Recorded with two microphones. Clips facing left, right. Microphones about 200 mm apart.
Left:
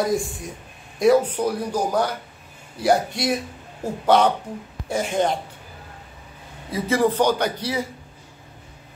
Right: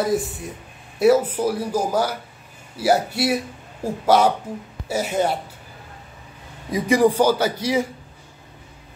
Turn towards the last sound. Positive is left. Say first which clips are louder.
# right 3 dB
turn(degrees=-10)  # may be behind; listen again after turning